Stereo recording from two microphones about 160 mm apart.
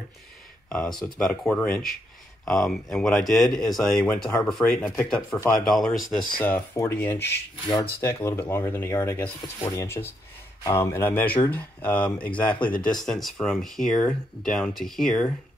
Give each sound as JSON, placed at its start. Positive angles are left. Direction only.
{"t": 0.7, "sound": "speech", "side_deg": 5}
{"t": 0.9, "sound": "speech", "side_deg": 25}
{"t": 1.2, "sound": "speech", "side_deg": 5}
{"t": 6.4, "sound": "speech", "side_deg": 15}
{"t": 7.6, "sound": "speech", "side_deg": 30}
{"t": 8.0, "sound": "speech", "side_deg": 20}